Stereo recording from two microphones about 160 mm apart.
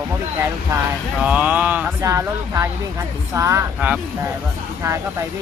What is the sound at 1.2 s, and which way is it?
A man's voice, 5° right (ahead or behind).